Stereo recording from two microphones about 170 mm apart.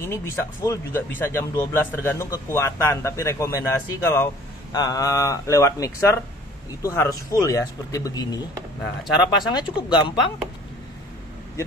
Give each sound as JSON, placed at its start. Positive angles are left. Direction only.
{"t": 0.0, "sound": "speech", "side_deg": 15}